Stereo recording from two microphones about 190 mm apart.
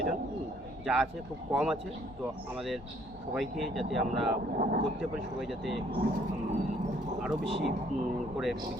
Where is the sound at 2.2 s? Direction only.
15° right (ahead or behind).